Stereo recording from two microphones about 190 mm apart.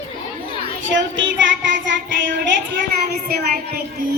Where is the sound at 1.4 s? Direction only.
75° right (ahead or behind).